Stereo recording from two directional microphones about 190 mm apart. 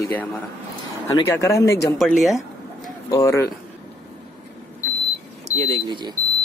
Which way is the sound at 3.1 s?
15° left (ahead or behind).